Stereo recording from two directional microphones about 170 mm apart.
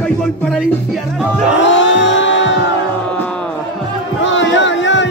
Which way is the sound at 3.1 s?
10° left (ahead or behind).